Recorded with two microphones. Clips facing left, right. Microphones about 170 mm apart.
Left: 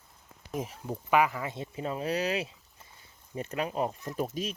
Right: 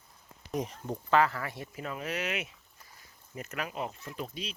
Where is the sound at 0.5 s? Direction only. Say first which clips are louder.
Right 1 dB; 5° left (ahead or behind); by 4.3 s 40° left (ahead or behind).